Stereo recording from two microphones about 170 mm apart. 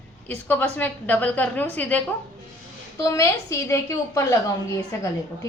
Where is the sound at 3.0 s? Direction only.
20° left (ahead or behind).